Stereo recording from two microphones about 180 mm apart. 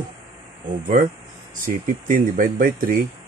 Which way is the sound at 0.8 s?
45° right (ahead or behind).